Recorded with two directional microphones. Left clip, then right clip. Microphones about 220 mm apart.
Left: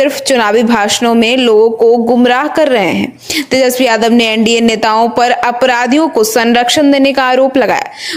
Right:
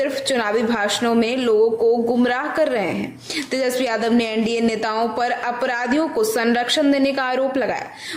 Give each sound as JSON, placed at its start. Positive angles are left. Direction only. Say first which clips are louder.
{"t": 0.0, "sound": "a woman's voice", "louder": "left 10 dB", "side_deg": 30}